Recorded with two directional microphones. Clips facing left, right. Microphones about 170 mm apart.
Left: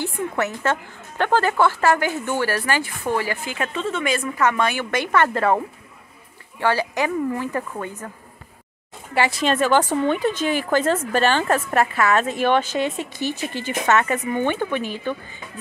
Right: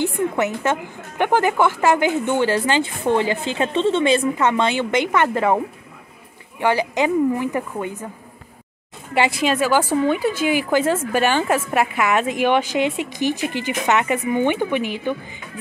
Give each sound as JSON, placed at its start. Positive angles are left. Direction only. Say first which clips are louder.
{"t": 0.7, "sound": "speech", "louder": "right 2 dB", "side_deg": -15}
{"t": 6.6, "sound": "a woman's voice", "louder": "right 2 dB", "side_deg": -20}
{"t": 9.1, "sound": "a woman's voice", "louder": "right 1 dB", "side_deg": -15}